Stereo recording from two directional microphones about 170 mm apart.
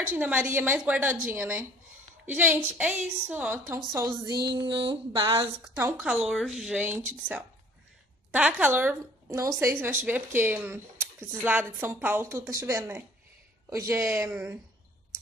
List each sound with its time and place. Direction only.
0.1 s speech: 10° right (ahead or behind)
4.5 s a sound: 25° right (ahead or behind)
5.6 s speech: 15° right (ahead or behind)
8.3 s a woman's voice: 10° right (ahead or behind)